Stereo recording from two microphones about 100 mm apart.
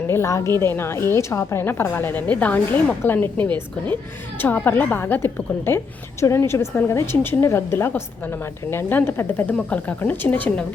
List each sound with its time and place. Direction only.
0.1 s a woman's voice: 30° left (ahead or behind)